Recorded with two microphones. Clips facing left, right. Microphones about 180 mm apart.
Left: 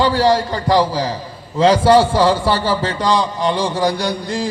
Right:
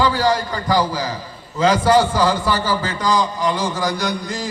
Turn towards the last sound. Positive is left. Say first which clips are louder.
# left 3 dB
turn(degrees=30)  # may be behind; listen again after turning